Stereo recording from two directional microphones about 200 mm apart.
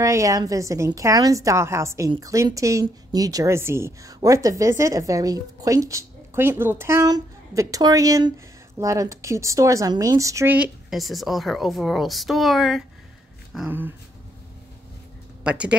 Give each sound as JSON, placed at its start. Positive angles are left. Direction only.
{"t": 0.0, "sound": "a woman's voice", "side_deg": -15}
{"t": 15.4, "sound": "speech", "side_deg": -5}